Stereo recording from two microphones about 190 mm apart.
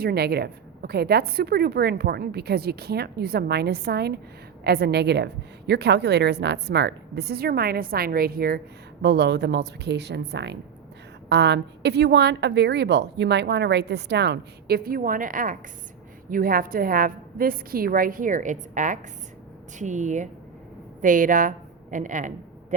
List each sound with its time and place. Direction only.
0.0 s a woman's voice: 55° right (ahead or behind); by 22.3 s 40° right (ahead or behind)